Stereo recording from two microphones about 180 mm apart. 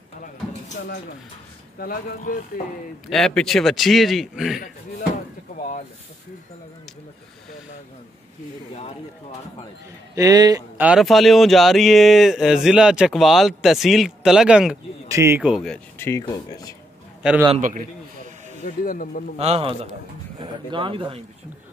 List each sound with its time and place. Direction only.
1.8 s speech: 55° left (ahead or behind)
3.1 s speech: centre (ahead or behind)
5.6 s speech: 45° left (ahead or behind)
10.1 s speech: 20° right (ahead or behind)
10.8 s speech: 5° right (ahead or behind)
15.0 s speech: 15° right (ahead or behind)
15.4 s speech: centre (ahead or behind)
16.1 s speech: 20° left (ahead or behind)
17.2 s a man's voice: 5° right (ahead or behind)
17.6 s a man's voice: 45° right (ahead or behind)
18.6 s speech: 50° left (ahead or behind)
19.3 s a man's voice: 35° right (ahead or behind)